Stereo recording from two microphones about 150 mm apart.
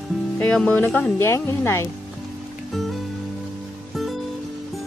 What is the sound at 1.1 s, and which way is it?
Speech, 20° left (ahead or behind).